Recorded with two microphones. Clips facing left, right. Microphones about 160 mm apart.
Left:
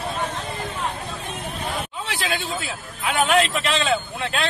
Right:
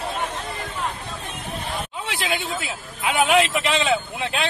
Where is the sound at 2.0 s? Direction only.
20° right (ahead or behind).